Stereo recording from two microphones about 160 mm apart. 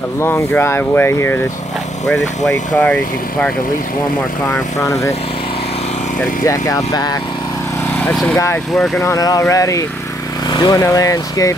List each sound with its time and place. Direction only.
0.2 s speech: 15° left (ahead or behind)
4.5 s speech: 20° left (ahead or behind)
6.4 s speech: 20° left (ahead or behind)
8.1 s speech: 5° left (ahead or behind)
9.0 s speech: 20° left (ahead or behind)